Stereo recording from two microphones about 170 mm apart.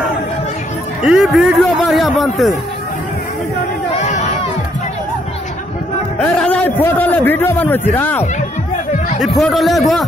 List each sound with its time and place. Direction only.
1.0 s a man's voice: 5° right (ahead or behind)
4.0 s crowd: 45° left (ahead or behind)
6.1 s a man's voice: 10° left (ahead or behind)
9.2 s a man's voice: centre (ahead or behind)